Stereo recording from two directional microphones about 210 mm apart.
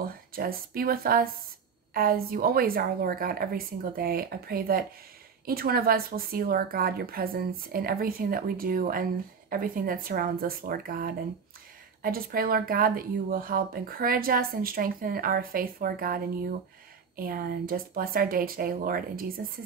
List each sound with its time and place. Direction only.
0.0 s speech: 45° right (ahead or behind)
17.2 s speech: 45° right (ahead or behind)